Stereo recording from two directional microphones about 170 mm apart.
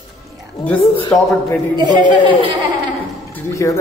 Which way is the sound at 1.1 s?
5° left (ahead or behind).